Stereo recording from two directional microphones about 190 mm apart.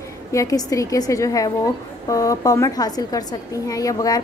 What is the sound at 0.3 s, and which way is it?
A woman's voice, 15° left (ahead or behind).